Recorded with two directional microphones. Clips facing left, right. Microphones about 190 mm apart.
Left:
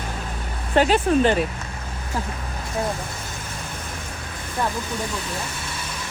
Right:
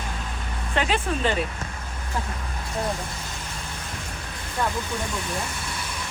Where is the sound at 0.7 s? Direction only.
40° left (ahead or behind).